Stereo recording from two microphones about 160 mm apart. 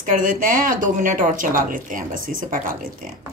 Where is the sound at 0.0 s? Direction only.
55° right (ahead or behind).